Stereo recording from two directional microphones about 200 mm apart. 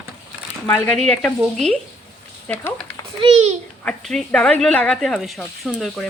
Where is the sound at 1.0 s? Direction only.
5° left (ahead or behind).